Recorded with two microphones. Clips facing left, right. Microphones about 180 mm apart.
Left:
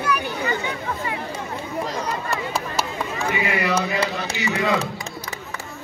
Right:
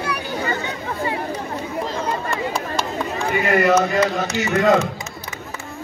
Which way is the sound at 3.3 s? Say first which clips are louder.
Right 7 dB; 45° right (ahead or behind).